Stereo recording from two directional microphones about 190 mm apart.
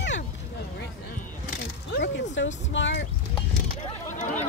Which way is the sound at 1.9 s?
70° left (ahead or behind).